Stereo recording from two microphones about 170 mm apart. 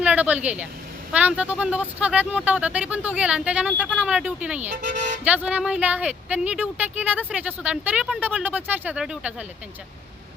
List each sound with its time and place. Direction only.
0.0 s speech: 10° right (ahead or behind)
4.7 s speech: 55° right (ahead or behind)
5.2 s speech: 10° right (ahead or behind)